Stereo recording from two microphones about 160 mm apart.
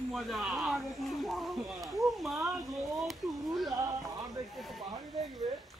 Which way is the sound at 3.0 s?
Centre (ahead or behind).